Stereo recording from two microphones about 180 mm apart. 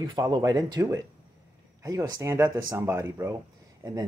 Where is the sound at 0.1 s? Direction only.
25° right (ahead or behind).